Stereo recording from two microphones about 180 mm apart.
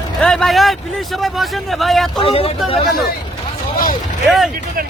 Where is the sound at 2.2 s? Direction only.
30° left (ahead or behind).